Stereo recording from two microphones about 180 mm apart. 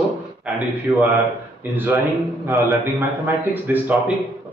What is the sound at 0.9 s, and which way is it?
Speech, 15° right (ahead or behind).